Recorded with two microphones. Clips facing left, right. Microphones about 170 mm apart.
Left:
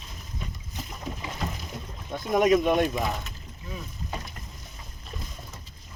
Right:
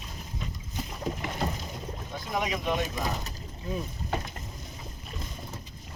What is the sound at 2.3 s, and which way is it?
Speech, 50° left (ahead or behind).